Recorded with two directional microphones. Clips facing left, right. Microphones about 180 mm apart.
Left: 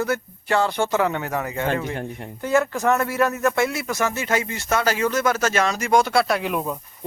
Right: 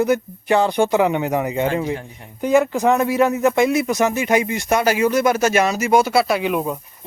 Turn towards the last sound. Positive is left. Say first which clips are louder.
# right 4 dB
turn(degrees=-5)  # may be behind; listen again after turning